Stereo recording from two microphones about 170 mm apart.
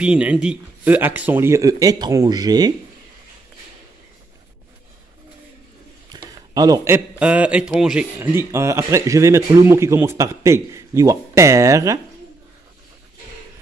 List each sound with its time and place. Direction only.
0.0 s a man's voice: 5° right (ahead or behind); by 2.7 s 25° right (ahead or behind)
6.0 s a man's voice: 25° right (ahead or behind)